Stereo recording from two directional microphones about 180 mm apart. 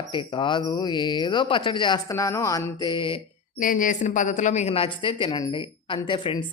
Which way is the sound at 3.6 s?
45° left (ahead or behind).